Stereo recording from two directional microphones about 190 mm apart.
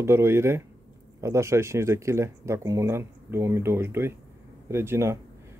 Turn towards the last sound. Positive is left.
turn(degrees=-15)  # may be behind; listen again after turning